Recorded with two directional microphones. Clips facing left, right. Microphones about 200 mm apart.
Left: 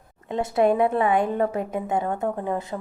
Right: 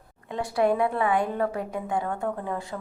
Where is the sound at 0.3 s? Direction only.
20° left (ahead or behind).